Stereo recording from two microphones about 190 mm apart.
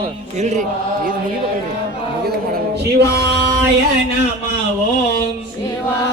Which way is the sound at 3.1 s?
60° right (ahead or behind).